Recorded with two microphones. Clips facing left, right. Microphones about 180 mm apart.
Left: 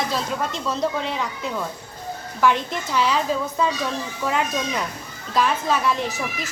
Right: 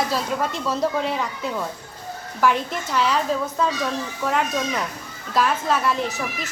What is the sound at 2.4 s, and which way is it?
A woman's voice, 5° right (ahead or behind).